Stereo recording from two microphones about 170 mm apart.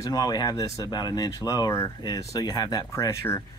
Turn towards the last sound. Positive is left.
turn(degrees=15)  # may be behind; listen again after turning